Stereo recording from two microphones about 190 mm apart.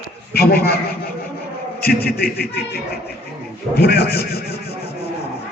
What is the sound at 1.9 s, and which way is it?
Speech, 55° left (ahead or behind).